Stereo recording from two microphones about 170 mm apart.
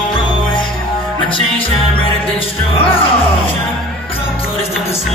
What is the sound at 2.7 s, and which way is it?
Music, 35° left (ahead or behind).